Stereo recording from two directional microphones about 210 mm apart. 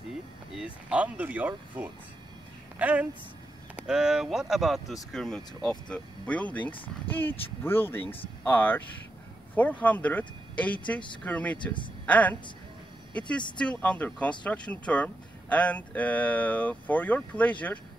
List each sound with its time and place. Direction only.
0.5 s speech: 5° right (ahead or behind)
11.5 s speech: 25° left (ahead or behind)
12.1 s speech: 5° left (ahead or behind)
13.6 s speech: 5° left (ahead or behind)